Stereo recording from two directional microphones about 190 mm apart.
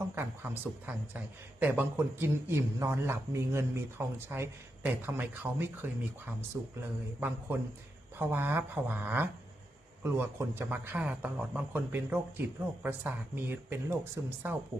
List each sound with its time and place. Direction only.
0.2 s speech: 10° right (ahead or behind)